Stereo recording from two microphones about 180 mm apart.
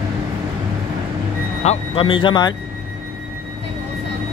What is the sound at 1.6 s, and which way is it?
Speech, 35° left (ahead or behind).